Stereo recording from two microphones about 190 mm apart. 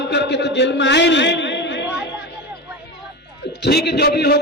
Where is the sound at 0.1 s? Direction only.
65° left (ahead or behind).